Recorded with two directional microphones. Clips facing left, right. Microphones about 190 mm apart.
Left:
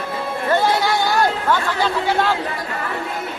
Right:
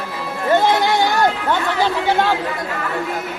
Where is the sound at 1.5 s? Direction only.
20° right (ahead or behind).